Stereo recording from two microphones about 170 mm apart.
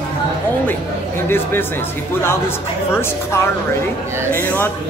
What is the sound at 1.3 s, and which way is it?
Speech, 15° left (ahead or behind).